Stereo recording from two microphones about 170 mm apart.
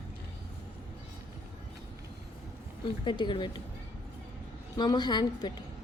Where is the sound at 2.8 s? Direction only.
30° left (ahead or behind).